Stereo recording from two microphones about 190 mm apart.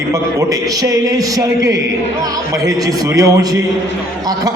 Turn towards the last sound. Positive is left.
turn(degrees=-20)  # may be behind; listen again after turning